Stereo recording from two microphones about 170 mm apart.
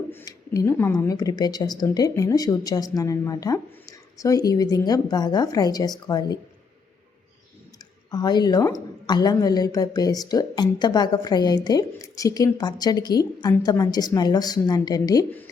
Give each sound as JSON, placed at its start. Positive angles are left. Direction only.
{"t": 0.1, "sound": "a woman's voice", "side_deg": 15}
{"t": 8.1, "sound": "a woman's voice", "side_deg": 25}